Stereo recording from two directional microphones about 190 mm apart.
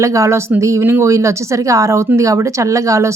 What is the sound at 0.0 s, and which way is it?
Speech, 15° right (ahead or behind).